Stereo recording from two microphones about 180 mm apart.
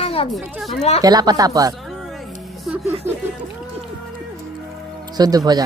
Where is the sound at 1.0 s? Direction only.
20° right (ahead or behind).